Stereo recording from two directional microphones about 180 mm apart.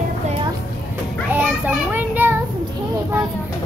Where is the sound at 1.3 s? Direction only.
10° right (ahead or behind).